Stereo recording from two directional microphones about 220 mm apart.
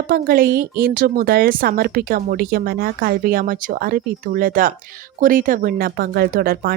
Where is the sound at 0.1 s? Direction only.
45° right (ahead or behind).